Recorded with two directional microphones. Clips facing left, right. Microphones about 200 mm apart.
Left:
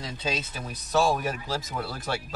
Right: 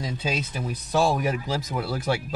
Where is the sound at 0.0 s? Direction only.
10° right (ahead or behind).